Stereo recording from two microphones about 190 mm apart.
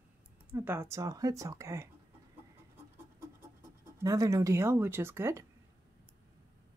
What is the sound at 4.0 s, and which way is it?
Speech, 15° right (ahead or behind).